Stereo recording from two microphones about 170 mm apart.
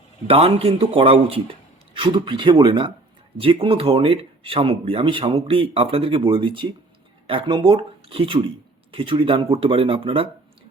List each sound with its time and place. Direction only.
0.3 s speech: 35° right (ahead or behind)